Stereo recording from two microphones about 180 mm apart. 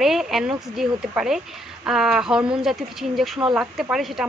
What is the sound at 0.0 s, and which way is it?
Speech, centre (ahead or behind).